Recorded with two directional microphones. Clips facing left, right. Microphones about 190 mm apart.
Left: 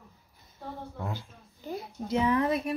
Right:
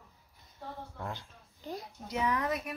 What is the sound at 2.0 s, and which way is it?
Speech, 30° left (ahead or behind).